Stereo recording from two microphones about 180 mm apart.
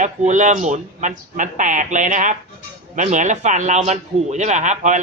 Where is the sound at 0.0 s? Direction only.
45° right (ahead or behind).